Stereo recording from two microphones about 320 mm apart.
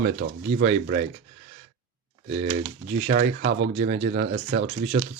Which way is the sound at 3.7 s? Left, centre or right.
Centre.